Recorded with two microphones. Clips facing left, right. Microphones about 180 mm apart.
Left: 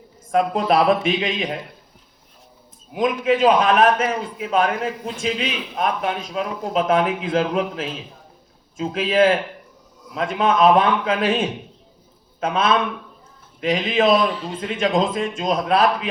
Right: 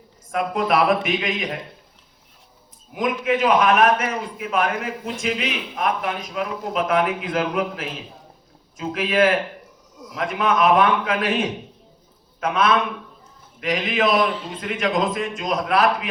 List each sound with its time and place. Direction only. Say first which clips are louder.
0.3 s a man's voice: left 3 dB; 30° left (ahead or behind)
2.9 s a man's voice: left 3 dB; 30° left (ahead or behind)
12.4 s a man's voice: even; 25° left (ahead or behind)